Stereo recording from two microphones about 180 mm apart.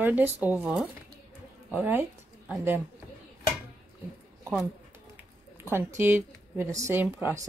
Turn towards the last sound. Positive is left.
turn(degrees=-15)  # may be behind; listen again after turning